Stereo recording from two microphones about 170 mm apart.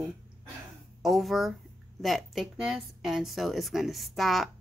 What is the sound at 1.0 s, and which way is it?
Speech, centre (ahead or behind).